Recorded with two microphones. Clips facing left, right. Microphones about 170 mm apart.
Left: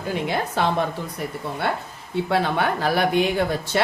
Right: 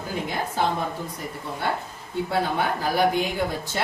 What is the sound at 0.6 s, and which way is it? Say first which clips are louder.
Speech: left 1 dB; 75° left (ahead or behind).